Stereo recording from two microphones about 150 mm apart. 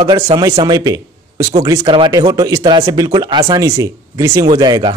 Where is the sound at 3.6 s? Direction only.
20° right (ahead or behind).